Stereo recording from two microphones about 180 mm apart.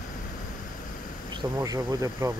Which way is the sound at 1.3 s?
20° right (ahead or behind).